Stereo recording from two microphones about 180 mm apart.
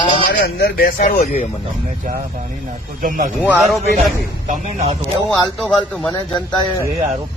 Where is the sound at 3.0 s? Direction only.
50° right (ahead or behind).